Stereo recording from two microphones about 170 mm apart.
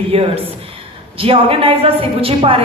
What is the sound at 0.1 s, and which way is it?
A man's voice, 35° right (ahead or behind).